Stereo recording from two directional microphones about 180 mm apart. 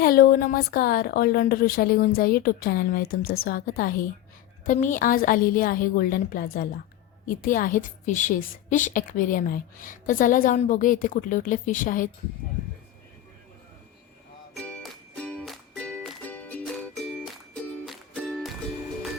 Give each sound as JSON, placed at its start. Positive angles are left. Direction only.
{"t": 0.0, "sound": "a woman's voice", "side_deg": 55}
{"t": 14.6, "sound": "music", "side_deg": 5}